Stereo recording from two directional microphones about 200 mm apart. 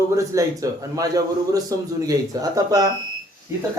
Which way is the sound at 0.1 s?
15° right (ahead or behind).